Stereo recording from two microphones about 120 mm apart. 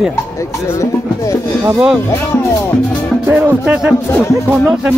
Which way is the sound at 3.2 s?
15° right (ahead or behind).